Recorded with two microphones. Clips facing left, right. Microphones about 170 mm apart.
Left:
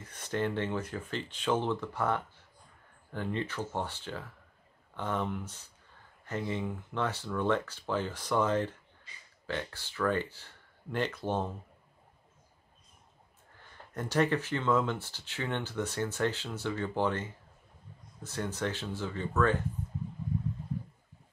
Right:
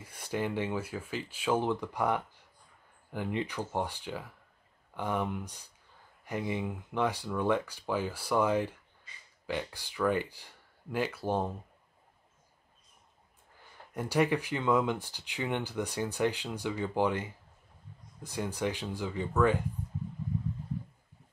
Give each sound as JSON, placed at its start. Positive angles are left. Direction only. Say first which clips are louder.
{"t": 0.0, "sound": "speech", "louder": "left 1 dB", "side_deg": -10}
{"t": 13.6, "sound": "speech", "louder": "right 1 dB", "side_deg": -10}